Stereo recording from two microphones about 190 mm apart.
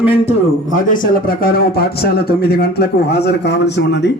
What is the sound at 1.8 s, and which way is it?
A man's voice, 55° left (ahead or behind).